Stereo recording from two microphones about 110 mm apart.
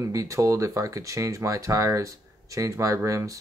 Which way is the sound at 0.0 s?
30° right (ahead or behind).